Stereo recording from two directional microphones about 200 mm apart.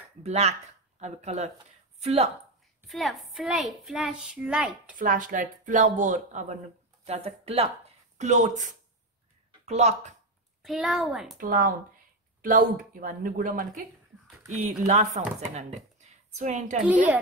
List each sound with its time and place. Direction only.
0.2 s speech: 30° right (ahead or behind)
2.9 s a woman's voice: centre (ahead or behind)
4.9 s speech: 40° right (ahead or behind)
10.6 s a woman's voice: centre (ahead or behind)
11.3 s a woman's voice: 45° right (ahead or behind)
14.9 s speech: 35° right (ahead or behind)
16.8 s a woman's voice: 5° right (ahead or behind)